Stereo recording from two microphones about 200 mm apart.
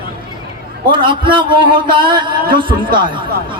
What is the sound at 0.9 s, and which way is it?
A man's voice, 25° right (ahead or behind).